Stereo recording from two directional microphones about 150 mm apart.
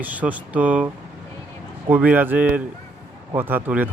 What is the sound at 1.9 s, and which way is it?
Speech, 10° right (ahead or behind).